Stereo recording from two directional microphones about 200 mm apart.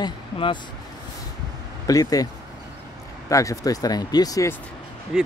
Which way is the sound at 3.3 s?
15° left (ahead or behind).